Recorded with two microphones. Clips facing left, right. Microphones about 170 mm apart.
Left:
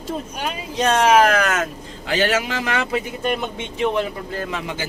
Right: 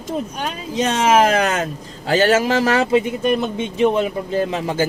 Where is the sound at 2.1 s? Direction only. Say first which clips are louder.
Right 5 dB; 45° right (ahead or behind).